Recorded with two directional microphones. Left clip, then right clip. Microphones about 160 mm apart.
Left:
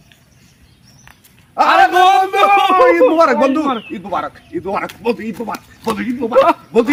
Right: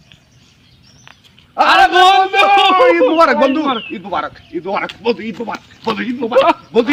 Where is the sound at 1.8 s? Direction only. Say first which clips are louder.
Right 1 dB; 5° left (ahead or behind).